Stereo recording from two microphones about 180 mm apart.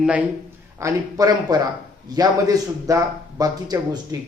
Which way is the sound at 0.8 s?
20° right (ahead or behind).